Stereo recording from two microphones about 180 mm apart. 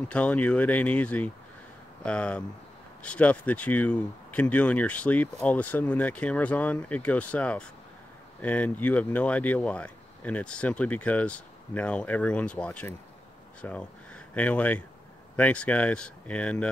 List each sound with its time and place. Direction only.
0.1 s speech: 5° left (ahead or behind)